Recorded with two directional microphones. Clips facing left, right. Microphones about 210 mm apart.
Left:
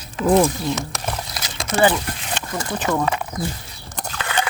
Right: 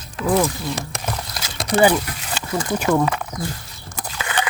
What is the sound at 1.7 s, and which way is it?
Speech, 10° right (ahead or behind).